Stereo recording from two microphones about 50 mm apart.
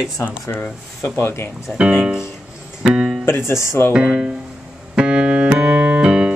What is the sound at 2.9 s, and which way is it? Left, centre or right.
Music, centre.